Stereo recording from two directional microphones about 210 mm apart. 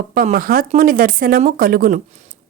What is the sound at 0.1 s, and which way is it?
A woman's voice, 40° right (ahead or behind).